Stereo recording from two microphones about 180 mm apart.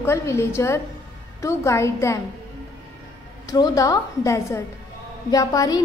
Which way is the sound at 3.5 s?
20° left (ahead or behind).